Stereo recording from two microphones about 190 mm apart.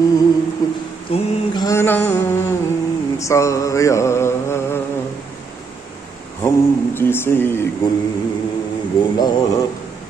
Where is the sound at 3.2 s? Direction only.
15° left (ahead or behind).